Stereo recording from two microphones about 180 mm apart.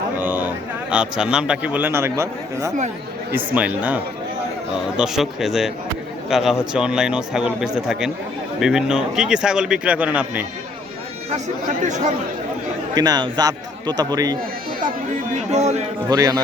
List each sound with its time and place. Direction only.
0.2 s a man's voice: 10° right (ahead or behind)
11.8 s speech: 40° right (ahead or behind)
12.9 s speech: 20° right (ahead or behind)
15.5 s speech: 40° right (ahead or behind)
16.0 s speech: 20° right (ahead or behind)